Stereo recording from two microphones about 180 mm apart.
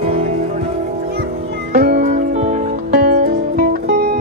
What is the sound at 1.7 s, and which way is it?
Music, 45° right (ahead or behind).